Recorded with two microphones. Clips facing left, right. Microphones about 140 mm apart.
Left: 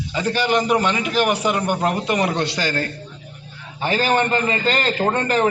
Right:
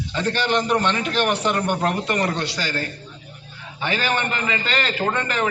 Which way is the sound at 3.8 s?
40° left (ahead or behind).